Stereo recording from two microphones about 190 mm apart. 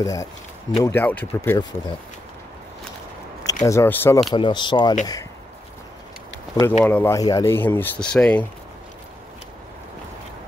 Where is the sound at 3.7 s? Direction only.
15° left (ahead or behind).